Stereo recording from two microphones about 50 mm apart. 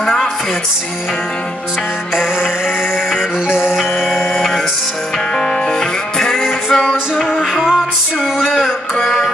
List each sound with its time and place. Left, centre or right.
0.0 s music: centre
3.4 s music: centre
5.4 s music: centre
7.2 s music: centre
8.4 s a sound: centre
9.0 s music: centre